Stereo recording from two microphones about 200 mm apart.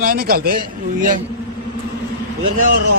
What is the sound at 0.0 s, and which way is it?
A man's voice, 50° right (ahead or behind).